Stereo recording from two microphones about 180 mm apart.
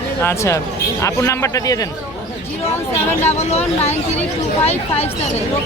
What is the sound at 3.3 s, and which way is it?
Speech, 35° left (ahead or behind).